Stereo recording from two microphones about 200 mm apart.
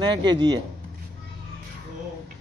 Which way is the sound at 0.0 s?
20° right (ahead or behind).